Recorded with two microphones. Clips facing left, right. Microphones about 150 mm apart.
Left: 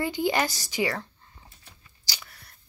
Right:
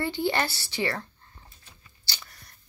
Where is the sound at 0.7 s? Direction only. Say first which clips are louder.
Left 2 dB; 10° left (ahead or behind).